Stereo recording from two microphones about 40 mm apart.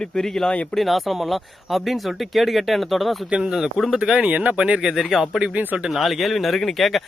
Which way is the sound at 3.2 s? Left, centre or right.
Right.